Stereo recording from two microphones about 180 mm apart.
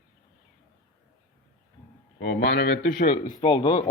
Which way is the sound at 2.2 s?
65° left (ahead or behind).